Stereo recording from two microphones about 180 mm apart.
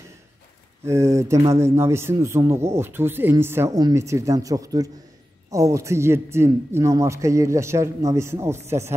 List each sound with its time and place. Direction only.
0.8 s a man's voice: 15° right (ahead or behind)